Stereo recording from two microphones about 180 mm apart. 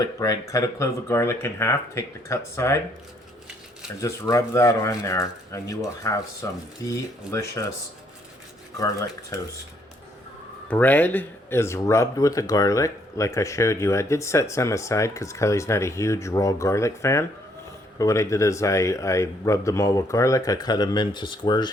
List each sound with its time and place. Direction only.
0.0 s speech: 20° left (ahead or behind)
4.0 s speech: 15° left (ahead or behind)
8.8 s speech: 15° left (ahead or behind)
10.7 s speech: 10° left (ahead or behind); by 21.7 s 25° left (ahead or behind)